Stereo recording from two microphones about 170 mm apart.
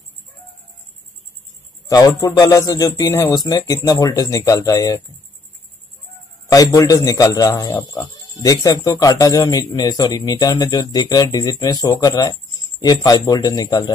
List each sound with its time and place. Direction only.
1.9 s a man's voice: 20° left (ahead or behind)
6.5 s a man's voice: 20° left (ahead or behind)